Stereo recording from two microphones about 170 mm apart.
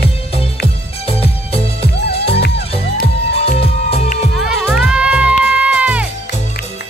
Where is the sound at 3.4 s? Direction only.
35° left (ahead or behind).